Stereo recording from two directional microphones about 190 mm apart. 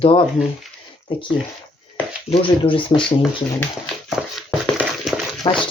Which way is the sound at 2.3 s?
30° left (ahead or behind).